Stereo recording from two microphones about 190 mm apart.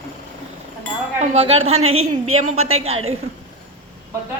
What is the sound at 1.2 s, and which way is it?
Speech, 30° right (ahead or behind).